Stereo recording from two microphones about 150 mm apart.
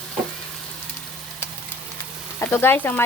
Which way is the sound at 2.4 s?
15° left (ahead or behind).